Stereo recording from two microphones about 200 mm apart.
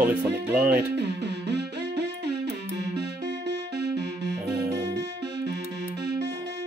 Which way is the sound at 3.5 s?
60° right (ahead or behind).